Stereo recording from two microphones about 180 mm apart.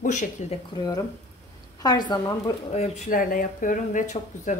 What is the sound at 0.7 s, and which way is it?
A woman's voice, 20° left (ahead or behind).